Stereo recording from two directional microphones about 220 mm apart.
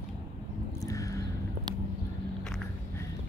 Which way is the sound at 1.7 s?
20° right (ahead or behind).